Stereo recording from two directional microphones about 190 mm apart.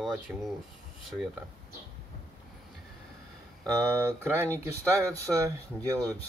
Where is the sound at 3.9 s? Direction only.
15° right (ahead or behind).